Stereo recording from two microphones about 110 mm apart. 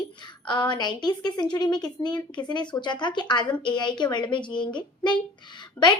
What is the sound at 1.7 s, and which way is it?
A child's voice, 40° left (ahead or behind).